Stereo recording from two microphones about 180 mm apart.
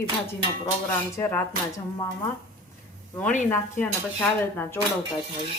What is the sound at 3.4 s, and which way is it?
Speech, 15° left (ahead or behind).